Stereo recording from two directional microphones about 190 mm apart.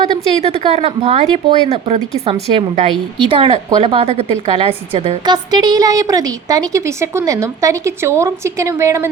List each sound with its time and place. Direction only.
0.1 s a woman's voice: 30° right (ahead or behind)
5.3 s a woman's voice: 20° right (ahead or behind)